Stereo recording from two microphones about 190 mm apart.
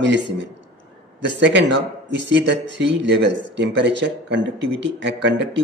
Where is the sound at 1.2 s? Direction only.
70° right (ahead or behind).